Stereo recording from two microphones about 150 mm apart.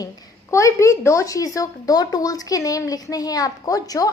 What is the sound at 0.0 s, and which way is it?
A woman's voice, 20° left (ahead or behind).